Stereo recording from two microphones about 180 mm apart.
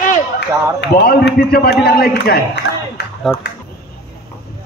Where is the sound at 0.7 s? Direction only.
65° left (ahead or behind).